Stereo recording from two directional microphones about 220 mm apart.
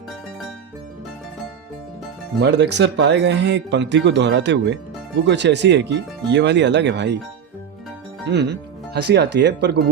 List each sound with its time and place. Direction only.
2.4 s speech: 50° right (ahead or behind)
8.3 s speech: 50° right (ahead or behind)